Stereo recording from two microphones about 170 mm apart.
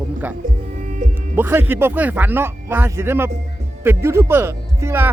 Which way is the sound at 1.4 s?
10° right (ahead or behind).